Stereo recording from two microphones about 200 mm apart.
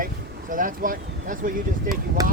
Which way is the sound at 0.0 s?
40° right (ahead or behind).